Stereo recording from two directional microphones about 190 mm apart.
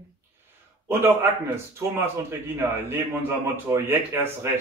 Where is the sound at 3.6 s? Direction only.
15° right (ahead or behind).